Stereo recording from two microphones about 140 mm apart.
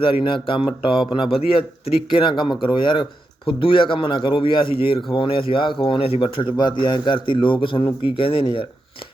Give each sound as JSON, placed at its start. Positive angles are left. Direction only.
{"t": 0.0, "sound": "a man's voice", "side_deg": 40}